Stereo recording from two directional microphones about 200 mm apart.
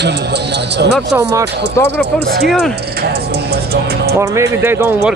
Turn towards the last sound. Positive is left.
turn(degrees=-10)  # may be behind; listen again after turning